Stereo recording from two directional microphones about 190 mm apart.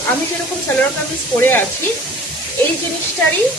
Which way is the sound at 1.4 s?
10° left (ahead or behind).